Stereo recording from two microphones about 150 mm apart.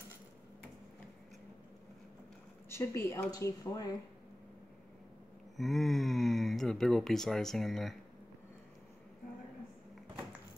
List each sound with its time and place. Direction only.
2.7 s speech: 15° left (ahead or behind)
5.6 s speech: centre (ahead or behind)